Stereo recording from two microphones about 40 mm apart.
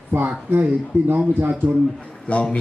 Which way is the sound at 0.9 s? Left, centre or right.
Right.